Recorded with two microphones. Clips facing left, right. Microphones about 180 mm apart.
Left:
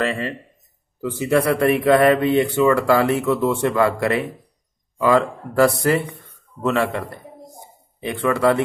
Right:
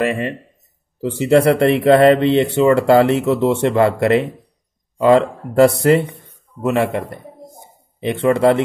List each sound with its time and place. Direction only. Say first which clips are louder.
0.0 s speech: right 4 dB; 20° right (ahead or behind)
1.1 s speech: right 6 dB; 30° right (ahead or behind)
7.6 s bird: right 6 dB; 25° right (ahead or behind)